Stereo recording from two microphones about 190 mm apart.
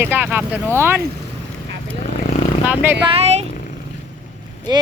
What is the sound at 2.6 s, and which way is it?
Speech, 10° right (ahead or behind).